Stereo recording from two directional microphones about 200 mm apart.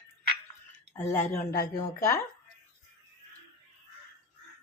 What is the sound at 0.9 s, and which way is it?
Speech, 10° left (ahead or behind).